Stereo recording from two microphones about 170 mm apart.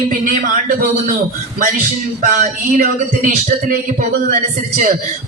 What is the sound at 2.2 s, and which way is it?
A man's voice, 50° right (ahead or behind).